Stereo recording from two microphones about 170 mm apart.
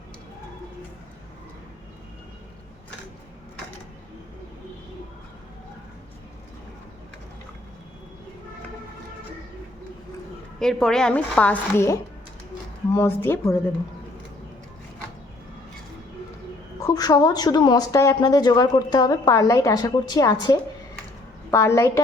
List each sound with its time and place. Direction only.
10.6 s a woman's voice: 5° left (ahead or behind)
16.8 s a woman's voice: 20° left (ahead or behind)